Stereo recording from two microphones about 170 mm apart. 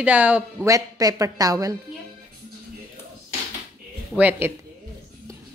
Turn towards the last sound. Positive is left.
turn(degrees=-10)  # may be behind; listen again after turning